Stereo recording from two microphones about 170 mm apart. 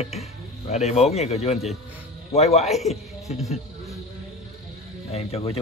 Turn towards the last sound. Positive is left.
turn(degrees=35)  # may be behind; listen again after turning